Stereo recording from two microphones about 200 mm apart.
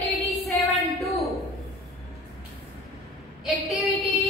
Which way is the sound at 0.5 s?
15° left (ahead or behind).